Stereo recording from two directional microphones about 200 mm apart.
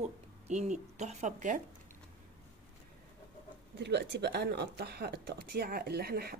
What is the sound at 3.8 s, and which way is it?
A woman's voice, 55° right (ahead or behind).